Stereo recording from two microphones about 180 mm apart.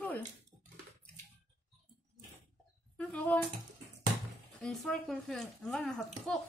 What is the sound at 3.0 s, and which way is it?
Dishes, 10° left (ahead or behind).